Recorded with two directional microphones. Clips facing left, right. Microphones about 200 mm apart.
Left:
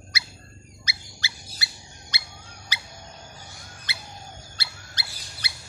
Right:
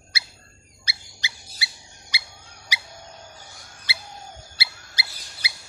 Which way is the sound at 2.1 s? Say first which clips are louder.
Right 3 dB; 10° right (ahead or behind).